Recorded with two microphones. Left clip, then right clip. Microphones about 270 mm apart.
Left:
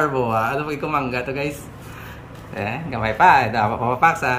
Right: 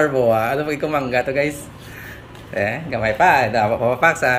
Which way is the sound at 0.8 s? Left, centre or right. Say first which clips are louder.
Right 4 dB; left.